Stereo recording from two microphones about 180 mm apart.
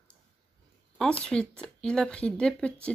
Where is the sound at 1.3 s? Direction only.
5° left (ahead or behind).